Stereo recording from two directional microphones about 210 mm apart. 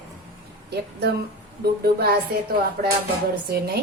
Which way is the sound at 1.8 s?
50° right (ahead or behind).